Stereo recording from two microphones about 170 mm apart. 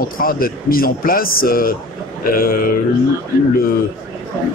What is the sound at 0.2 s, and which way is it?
A man's voice, 60° left (ahead or behind).